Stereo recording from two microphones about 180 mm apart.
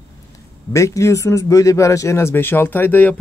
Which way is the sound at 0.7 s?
15° left (ahead or behind).